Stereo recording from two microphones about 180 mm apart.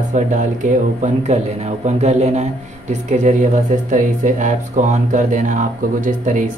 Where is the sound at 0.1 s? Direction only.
45° right (ahead or behind).